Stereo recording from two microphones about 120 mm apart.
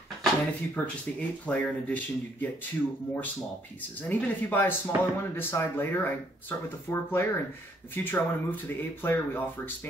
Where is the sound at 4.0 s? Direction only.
15° left (ahead or behind).